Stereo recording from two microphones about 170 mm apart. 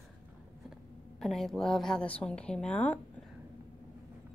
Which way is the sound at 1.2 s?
Centre (ahead or behind).